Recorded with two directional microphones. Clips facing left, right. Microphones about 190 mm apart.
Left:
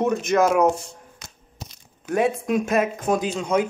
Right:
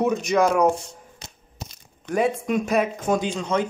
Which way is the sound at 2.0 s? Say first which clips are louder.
Left 1 dB; 5° left (ahead or behind).